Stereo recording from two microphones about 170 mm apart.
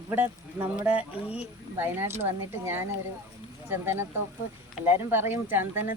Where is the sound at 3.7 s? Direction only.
15° right (ahead or behind).